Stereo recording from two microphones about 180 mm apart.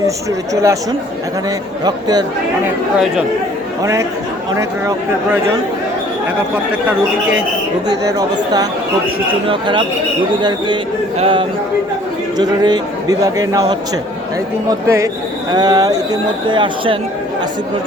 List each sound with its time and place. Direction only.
0.3 s speech: 15° right (ahead or behind)
1.8 s a man's voice: 20° right (ahead or behind)
4.5 s speech: 15° right (ahead or behind)
9.5 s a man's voice: 25° right (ahead or behind)
11.2 s a man's voice: 30° right (ahead or behind)